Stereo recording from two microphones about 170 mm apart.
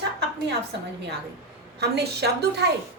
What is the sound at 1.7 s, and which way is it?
Speech, 70° right (ahead or behind).